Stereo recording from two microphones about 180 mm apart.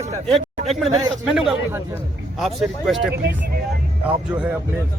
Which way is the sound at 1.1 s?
Centre (ahead or behind).